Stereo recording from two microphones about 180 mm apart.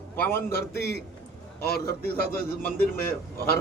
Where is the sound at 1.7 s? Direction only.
55° left (ahead or behind).